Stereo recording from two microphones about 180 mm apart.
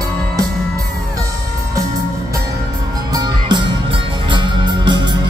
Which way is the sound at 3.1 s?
25° right (ahead or behind).